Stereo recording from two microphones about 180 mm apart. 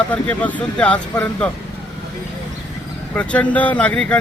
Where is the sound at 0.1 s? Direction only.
10° left (ahead or behind).